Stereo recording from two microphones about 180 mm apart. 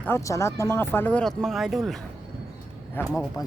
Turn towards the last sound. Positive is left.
turn(degrees=20)  # may be behind; listen again after turning